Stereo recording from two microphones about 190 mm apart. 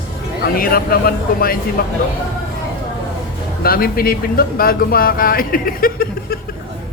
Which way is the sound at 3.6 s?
50° left (ahead or behind).